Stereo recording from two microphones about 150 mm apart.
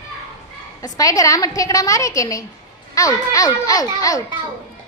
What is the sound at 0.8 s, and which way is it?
A child's voice, 20° left (ahead or behind).